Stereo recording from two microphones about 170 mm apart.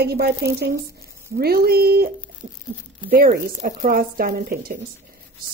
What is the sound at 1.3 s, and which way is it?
Speech, 60° right (ahead or behind).